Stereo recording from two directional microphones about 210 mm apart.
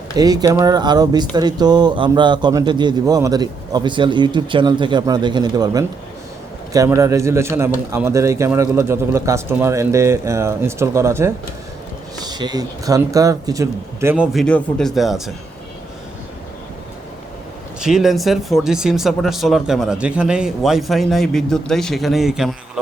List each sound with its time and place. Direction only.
0.2 s speech: 15° right (ahead or behind)
14.4 s speech: 5° left (ahead or behind)
17.7 s speech: centre (ahead or behind)